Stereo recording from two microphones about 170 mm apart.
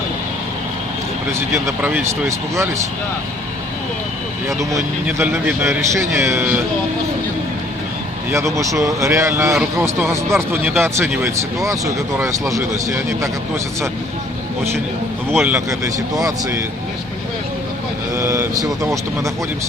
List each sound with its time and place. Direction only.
1.3 s speech: 15° right (ahead or behind)
4.4 s speech: 15° right (ahead or behind)
8.3 s speech: 15° right (ahead or behind)
15.4 s speech: 15° right (ahead or behind)
18.1 s speech: 15° right (ahead or behind)